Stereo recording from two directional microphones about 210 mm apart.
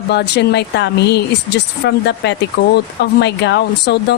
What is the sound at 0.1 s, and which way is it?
A woman's voice, 55° left (ahead or behind).